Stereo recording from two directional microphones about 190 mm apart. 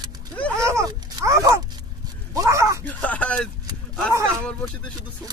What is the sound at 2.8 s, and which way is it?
Speech, 5° left (ahead or behind).